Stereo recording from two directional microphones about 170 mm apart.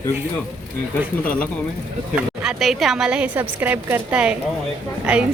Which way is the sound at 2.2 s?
Centre (ahead or behind).